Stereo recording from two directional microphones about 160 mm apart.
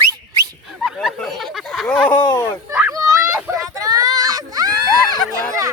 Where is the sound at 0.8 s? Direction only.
Centre (ahead or behind).